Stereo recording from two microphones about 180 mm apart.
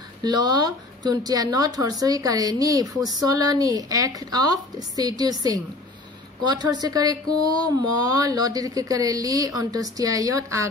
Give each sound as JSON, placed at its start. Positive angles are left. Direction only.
{"t": 0.2, "sound": "speech", "side_deg": -20}